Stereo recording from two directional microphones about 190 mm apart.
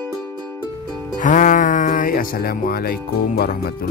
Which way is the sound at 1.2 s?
45° left (ahead or behind).